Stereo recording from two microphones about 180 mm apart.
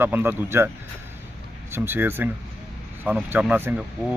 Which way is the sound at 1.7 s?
10° right (ahead or behind).